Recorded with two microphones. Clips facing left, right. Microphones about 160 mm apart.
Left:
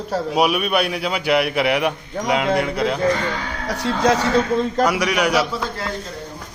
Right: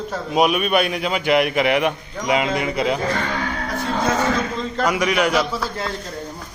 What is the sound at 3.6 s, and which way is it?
Speech, 80° left.